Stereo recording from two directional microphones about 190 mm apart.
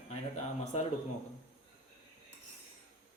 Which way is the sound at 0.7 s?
35° left (ahead or behind).